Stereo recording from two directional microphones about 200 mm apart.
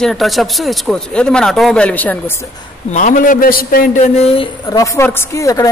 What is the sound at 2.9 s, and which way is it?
A man's voice, 40° left (ahead or behind).